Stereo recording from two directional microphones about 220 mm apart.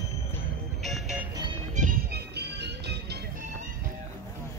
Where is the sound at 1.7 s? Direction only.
35° right (ahead or behind).